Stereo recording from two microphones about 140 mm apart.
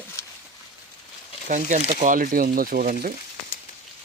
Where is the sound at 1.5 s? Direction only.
60° right (ahead or behind); by 3.1 s 85° right.